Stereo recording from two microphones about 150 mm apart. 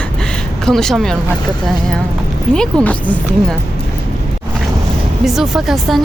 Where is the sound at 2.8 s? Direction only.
10° left (ahead or behind).